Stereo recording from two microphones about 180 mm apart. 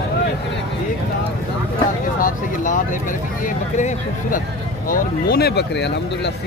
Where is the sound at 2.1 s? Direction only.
50° left (ahead or behind).